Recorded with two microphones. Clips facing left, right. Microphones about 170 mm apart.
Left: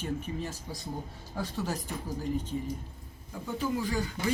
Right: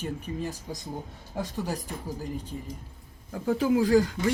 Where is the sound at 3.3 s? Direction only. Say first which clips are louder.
Right 8 dB; 85° right.